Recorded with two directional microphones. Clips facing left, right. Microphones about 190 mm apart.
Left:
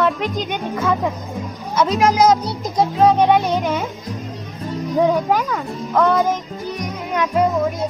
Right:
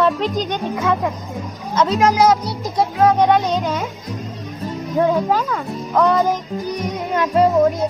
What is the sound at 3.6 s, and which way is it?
Speech, 20° left (ahead or behind).